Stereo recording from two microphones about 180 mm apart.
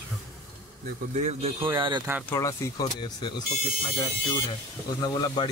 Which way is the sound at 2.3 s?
15° left (ahead or behind).